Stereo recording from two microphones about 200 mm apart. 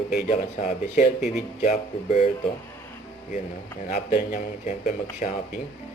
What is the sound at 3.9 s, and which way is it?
Speech, 35° left (ahead or behind).